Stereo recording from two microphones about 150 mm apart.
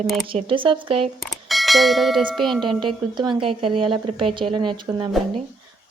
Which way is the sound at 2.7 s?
30° right (ahead or behind).